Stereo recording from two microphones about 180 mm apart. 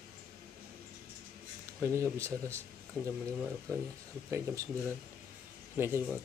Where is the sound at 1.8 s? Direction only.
15° right (ahead or behind).